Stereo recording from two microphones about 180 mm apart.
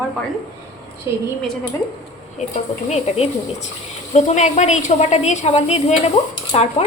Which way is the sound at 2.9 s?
40° left (ahead or behind).